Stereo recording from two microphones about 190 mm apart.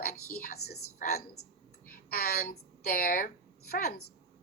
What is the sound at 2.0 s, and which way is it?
A woman's voice, 55° left (ahead or behind).